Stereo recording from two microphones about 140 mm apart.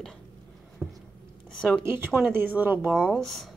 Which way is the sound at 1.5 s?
5° left (ahead or behind).